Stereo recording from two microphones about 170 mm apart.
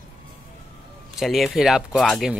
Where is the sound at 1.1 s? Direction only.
Centre (ahead or behind).